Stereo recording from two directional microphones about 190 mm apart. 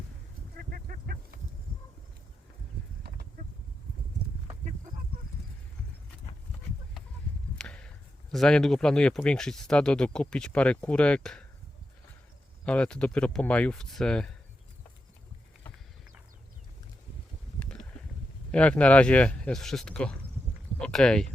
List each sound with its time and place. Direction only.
0.5 s goose: 50° right (ahead or behind)
3.0 s a sound: 55° right (ahead or behind)
7.6 s a sound: 5° left (ahead or behind)
8.3 s speech: 5° left (ahead or behind)
12.6 s speech: 5° left (ahead or behind)
18.5 s speech: 5° left (ahead or behind)